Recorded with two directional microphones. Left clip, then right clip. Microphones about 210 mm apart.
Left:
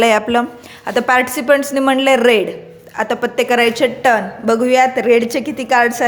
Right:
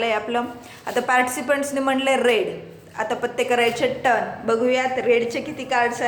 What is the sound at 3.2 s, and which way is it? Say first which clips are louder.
Speech: left 6 dB; 55° left (ahead or behind).